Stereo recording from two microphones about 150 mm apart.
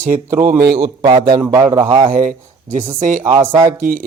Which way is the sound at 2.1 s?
65° right (ahead or behind).